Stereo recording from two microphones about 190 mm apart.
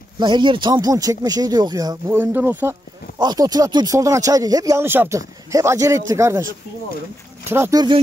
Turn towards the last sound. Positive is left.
turn(degrees=-20)  # may be behind; listen again after turning